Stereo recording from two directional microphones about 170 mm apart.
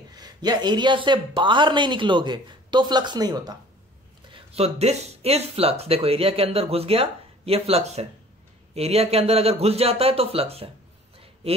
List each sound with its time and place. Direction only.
0.1 s speech: 25° right (ahead or behind)
4.3 s speech: 35° right (ahead or behind)